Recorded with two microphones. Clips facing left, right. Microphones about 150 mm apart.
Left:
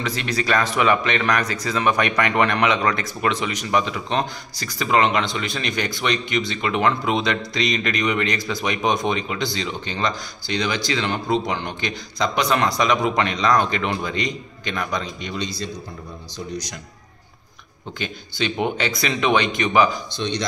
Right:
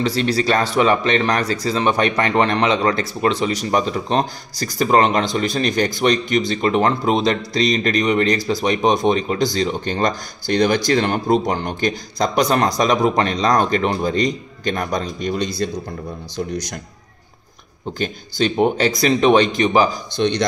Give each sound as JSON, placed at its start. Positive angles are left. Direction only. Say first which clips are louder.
{"t": 0.0, "sound": "speech", "louder": "right 6 dB", "side_deg": -35}
{"t": 17.9, "sound": "speech", "louder": "right 6 dB", "side_deg": -40}
{"t": 20.2, "sound": "a man's voice", "louder": "right 9 dB", "side_deg": -55}